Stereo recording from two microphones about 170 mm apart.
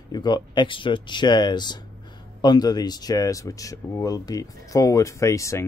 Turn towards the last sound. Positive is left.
turn(degrees=20)  # may be behind; listen again after turning